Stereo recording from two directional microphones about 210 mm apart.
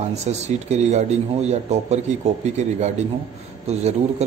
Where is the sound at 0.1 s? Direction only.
30° right (ahead or behind).